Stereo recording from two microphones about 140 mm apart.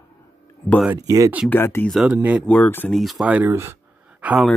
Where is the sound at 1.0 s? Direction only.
25° right (ahead or behind).